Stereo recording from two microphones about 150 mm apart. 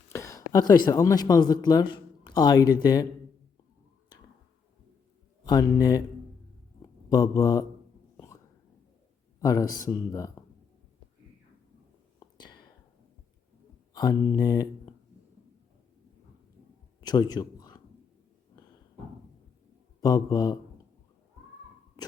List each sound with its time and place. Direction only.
0.1 s speech: 20° left (ahead or behind)
5.5 s speech: 25° left (ahead or behind)
7.1 s speech: 25° left (ahead or behind)
8.1 s hiccup: 20° left (ahead or behind)
9.4 s speech: 25° left (ahead or behind)
12.2 s whispering: 30° left (ahead or behind)
13.9 s speech: 25° left (ahead or behind)
17.0 s a sound: 25° left (ahead or behind)
20.0 s speech: 25° left (ahead or behind)